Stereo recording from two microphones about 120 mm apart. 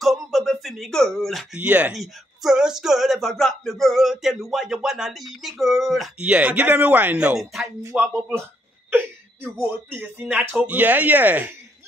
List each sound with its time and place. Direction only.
0.0 s speech: centre (ahead or behind)
1.6 s speech: 10° right (ahead or behind)